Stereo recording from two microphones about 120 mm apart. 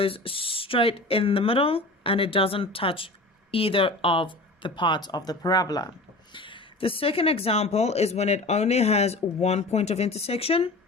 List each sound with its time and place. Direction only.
0.0 s speech: 50° left (ahead or behind)